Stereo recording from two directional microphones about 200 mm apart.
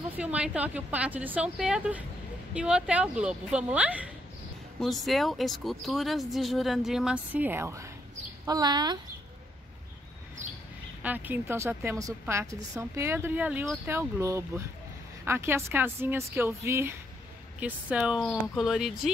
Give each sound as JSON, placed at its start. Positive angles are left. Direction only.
{"t": 0.2, "sound": "a woman's voice", "side_deg": -5}
{"t": 10.4, "sound": "bird", "side_deg": -35}
{"t": 11.0, "sound": "a woman's voice", "side_deg": -10}